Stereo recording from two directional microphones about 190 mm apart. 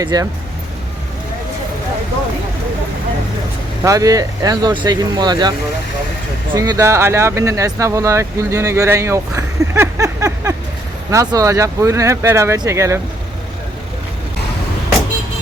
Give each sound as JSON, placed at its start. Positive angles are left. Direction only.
{"t": 0.0, "sound": "speech", "side_deg": -20}
{"t": 3.8, "sound": "speech", "side_deg": -20}